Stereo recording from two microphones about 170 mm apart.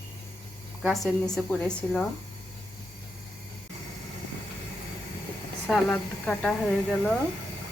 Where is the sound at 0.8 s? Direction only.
Centre (ahead or behind).